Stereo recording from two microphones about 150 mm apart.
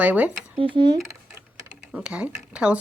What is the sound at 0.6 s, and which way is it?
Speech, 35° right (ahead or behind).